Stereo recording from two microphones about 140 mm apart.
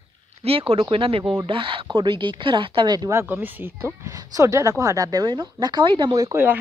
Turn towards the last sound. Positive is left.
turn(degrees=-25)  # may be behind; listen again after turning